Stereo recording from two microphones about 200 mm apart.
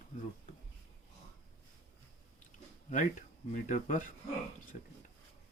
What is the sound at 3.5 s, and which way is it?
Speech, 40° left (ahead or behind).